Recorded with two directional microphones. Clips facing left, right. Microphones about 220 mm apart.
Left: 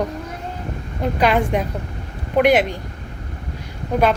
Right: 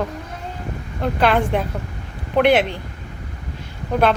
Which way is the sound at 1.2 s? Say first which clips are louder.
Even; 5° left (ahead or behind).